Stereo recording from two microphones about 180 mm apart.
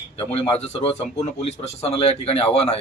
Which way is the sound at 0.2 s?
35° left (ahead or behind).